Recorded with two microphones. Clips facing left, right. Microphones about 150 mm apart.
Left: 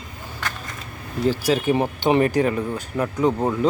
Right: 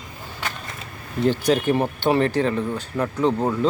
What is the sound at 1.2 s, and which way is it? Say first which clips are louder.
Speech: right 1 dB; 5° left (ahead or behind).